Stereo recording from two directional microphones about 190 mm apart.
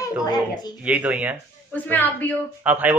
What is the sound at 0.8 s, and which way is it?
Speech, 5° right (ahead or behind).